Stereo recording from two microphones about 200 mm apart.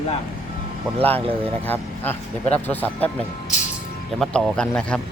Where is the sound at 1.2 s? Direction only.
25° right (ahead or behind).